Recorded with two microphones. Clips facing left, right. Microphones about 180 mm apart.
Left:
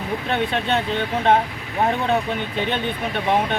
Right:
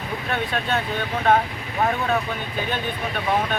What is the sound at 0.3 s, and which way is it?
Speech, 25° left (ahead or behind).